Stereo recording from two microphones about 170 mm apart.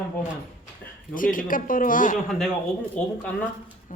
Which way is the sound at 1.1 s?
55° left (ahead or behind).